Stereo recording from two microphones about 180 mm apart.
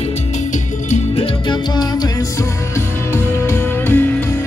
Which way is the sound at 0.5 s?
40° left (ahead or behind).